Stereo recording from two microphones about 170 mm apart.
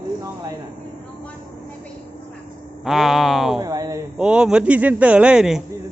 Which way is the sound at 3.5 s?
20° right (ahead or behind).